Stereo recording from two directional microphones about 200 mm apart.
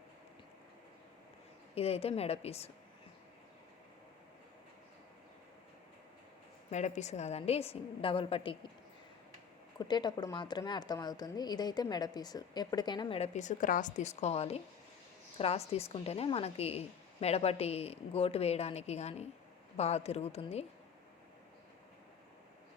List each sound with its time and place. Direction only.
1.7 s a woman's voice: 30° left (ahead or behind)
6.7 s a woman's voice: 35° left (ahead or behind)
9.7 s a woman's voice: 20° left (ahead or behind)